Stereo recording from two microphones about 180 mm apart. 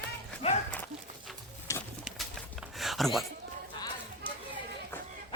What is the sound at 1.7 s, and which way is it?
Bird, 15° left (ahead or behind).